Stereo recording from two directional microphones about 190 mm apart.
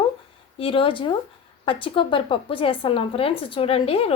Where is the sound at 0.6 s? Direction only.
30° left (ahead or behind).